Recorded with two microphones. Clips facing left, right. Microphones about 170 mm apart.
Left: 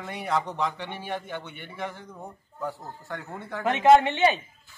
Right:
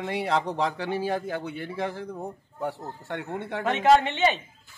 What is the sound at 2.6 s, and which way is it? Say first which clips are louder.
Speech: right 2 dB; 25° right (ahead or behind).